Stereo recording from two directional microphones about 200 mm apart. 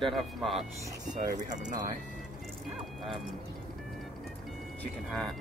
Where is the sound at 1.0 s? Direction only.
40° right (ahead or behind).